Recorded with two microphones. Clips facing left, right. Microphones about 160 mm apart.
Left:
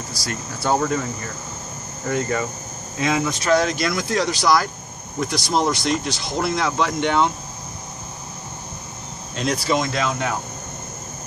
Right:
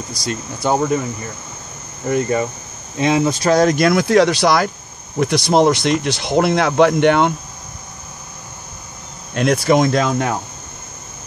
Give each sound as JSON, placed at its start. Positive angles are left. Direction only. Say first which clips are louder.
{"t": 0.2, "sound": "speech", "louder": "right 5 dB", "side_deg": -20}
{"t": 2.0, "sound": "speech", "louder": "right 5 dB", "side_deg": -20}
{"t": 9.3, "sound": "speech", "louder": "right 7 dB", "side_deg": -60}